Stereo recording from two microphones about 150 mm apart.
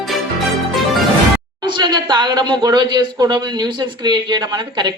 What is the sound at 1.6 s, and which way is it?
A woman's voice, 30° right (ahead or behind).